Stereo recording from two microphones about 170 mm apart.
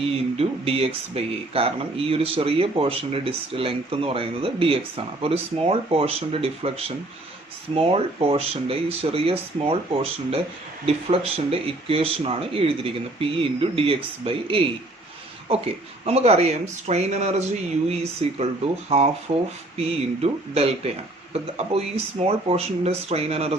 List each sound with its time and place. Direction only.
0.3 s speech: 35° right (ahead or behind)